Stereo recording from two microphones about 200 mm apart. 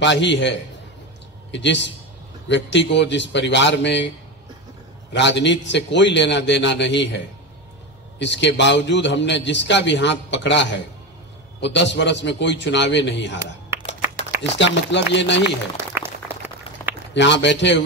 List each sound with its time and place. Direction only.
0.0 s a man's voice: 60° left (ahead or behind)
5.1 s a man's voice: 60° left (ahead or behind)
14.6 s a man's voice: 60° left (ahead or behind)
15.8 s a sound: 10° right (ahead or behind)
17.1 s a man's voice: 60° left (ahead or behind)